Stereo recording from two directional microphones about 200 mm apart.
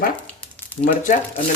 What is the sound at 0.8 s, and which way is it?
Speech, 40° left (ahead or behind).